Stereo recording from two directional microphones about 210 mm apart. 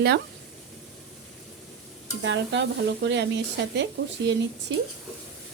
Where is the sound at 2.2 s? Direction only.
60° right (ahead or behind).